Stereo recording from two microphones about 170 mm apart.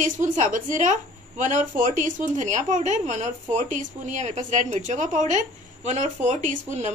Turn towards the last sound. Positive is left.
turn(degrees=-45)  # may be behind; listen again after turning